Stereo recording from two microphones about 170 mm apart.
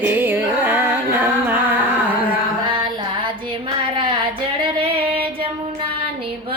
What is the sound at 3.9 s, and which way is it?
Female singing, 30° right (ahead or behind).